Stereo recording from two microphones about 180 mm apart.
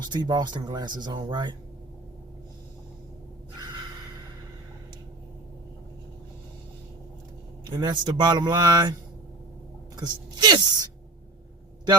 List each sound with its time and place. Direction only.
0.0 s speech: 25° right (ahead or behind)
7.7 s speech: 25° right (ahead or behind)